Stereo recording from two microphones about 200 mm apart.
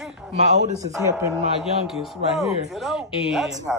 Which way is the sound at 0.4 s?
35° right (ahead or behind).